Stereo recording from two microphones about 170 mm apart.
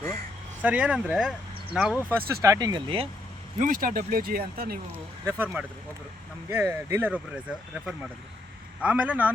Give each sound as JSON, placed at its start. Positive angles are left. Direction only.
{"t": 0.6, "sound": "speech", "side_deg": -5}
{"t": 2.0, "sound": "speech", "side_deg": -20}
{"t": 3.6, "sound": "speech", "side_deg": -50}
{"t": 5.2, "sound": "speech", "side_deg": -15}
{"t": 8.8, "sound": "speech", "side_deg": -10}